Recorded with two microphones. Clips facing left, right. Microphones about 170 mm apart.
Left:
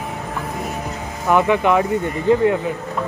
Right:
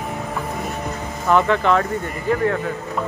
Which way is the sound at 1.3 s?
10° left (ahead or behind).